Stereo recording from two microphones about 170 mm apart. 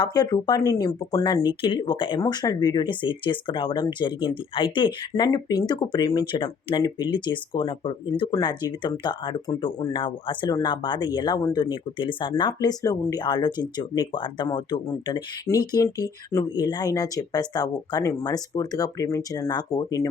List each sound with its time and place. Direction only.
0.0 s speech: 25° left (ahead or behind)